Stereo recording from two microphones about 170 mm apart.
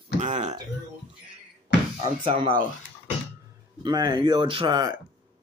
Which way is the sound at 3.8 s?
25° right (ahead or behind).